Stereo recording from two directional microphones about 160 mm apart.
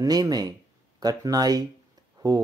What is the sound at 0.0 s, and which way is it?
Speech, 25° right (ahead or behind).